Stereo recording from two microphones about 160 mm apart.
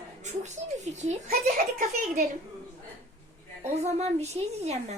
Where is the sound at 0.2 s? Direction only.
50° right (ahead or behind).